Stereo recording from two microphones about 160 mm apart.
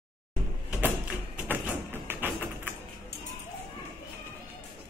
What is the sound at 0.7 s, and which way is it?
Music, 10° right (ahead or behind).